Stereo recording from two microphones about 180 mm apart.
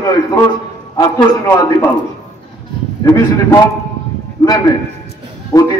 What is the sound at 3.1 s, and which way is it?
Speech, 20° left (ahead or behind).